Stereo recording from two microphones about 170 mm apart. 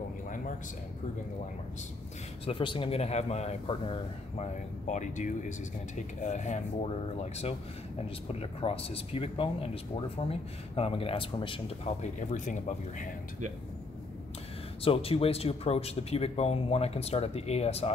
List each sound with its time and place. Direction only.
2.4 s speech: 30° left (ahead or behind)
8.3 s speech: 35° left (ahead or behind)
14.8 s speech: 35° left (ahead or behind)